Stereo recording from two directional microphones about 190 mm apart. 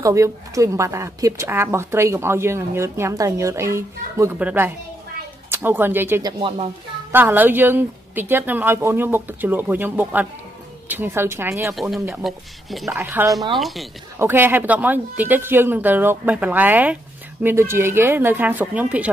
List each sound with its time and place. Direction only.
0.0 s speech: 15° right (ahead or behind)
11.7 s speech: centre (ahead or behind)
12.9 s speech: 10° right (ahead or behind)
13.6 s speech: centre (ahead or behind)
14.1 s speech: 10° right (ahead or behind)